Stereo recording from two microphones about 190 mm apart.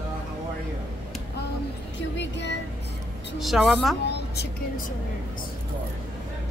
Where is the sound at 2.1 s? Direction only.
65° left (ahead or behind).